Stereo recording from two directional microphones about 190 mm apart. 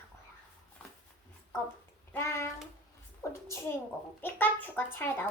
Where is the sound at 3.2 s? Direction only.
15° left (ahead or behind).